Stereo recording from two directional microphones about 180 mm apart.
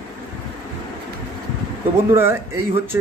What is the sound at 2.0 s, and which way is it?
Speech, 15° right (ahead or behind).